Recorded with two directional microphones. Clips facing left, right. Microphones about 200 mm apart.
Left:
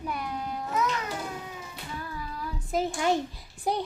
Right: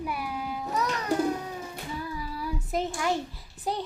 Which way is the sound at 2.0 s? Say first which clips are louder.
Right 1 dB; 10° right (ahead or behind).